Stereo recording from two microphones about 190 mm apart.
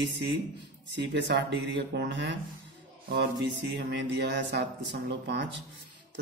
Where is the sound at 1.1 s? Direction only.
65° right (ahead or behind).